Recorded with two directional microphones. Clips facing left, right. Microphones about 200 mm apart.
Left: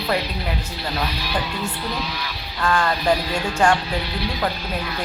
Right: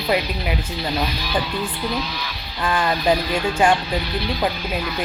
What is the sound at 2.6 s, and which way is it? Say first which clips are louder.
Speech: left 1 dB; 10° right (ahead or behind).